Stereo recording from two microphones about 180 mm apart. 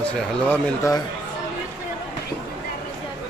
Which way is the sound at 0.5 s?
15° left (ahead or behind).